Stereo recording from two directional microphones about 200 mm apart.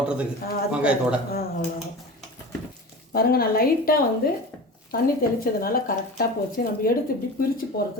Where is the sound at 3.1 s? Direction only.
50° left (ahead or behind).